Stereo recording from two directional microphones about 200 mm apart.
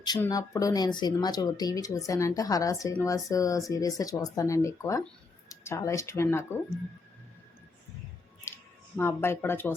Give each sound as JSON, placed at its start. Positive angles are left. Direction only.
{"t": 0.2, "sound": "speech", "side_deg": 15}
{"t": 8.5, "sound": "squish", "side_deg": 15}
{"t": 9.0, "sound": "speech", "side_deg": 10}